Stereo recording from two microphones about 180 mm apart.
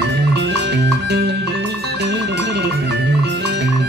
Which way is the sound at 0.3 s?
70° right (ahead or behind).